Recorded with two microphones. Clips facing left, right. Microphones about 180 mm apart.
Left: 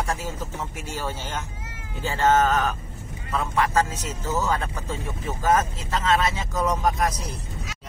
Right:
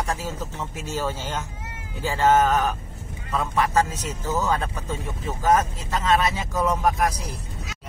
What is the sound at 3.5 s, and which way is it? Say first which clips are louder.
Speech: right 1 dB; 15° right (ahead or behind).